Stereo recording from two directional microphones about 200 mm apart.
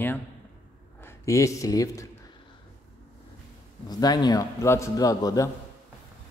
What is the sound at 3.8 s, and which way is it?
A man's voice, 20° left (ahead or behind).